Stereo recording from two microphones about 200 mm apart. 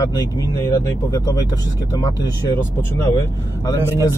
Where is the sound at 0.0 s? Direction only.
15° left (ahead or behind).